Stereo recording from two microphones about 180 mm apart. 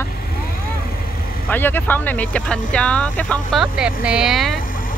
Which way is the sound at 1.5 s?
10° left (ahead or behind).